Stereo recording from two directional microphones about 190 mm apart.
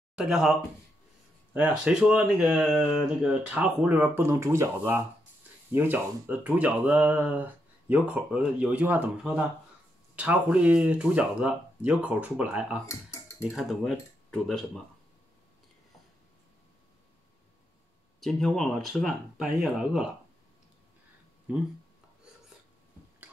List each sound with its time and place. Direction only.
0.1 s speech: 5° right (ahead or behind)
12.8 s speech: 15° left (ahead or behind)
13.4 s speech: centre (ahead or behind)
18.2 s speech: centre (ahead or behind)